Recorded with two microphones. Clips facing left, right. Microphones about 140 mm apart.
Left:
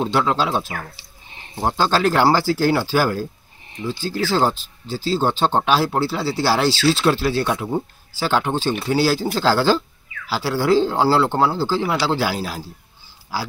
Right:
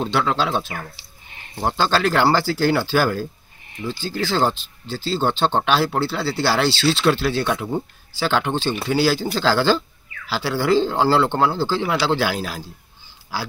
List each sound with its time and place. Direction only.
0.0 s speech: 10° left (ahead or behind)
1.3 s a sound: 25° left (ahead or behind)
1.6 s speech: 10° left (ahead or behind)